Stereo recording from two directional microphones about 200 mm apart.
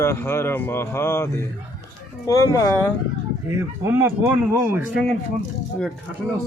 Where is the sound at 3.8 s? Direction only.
10° right (ahead or behind).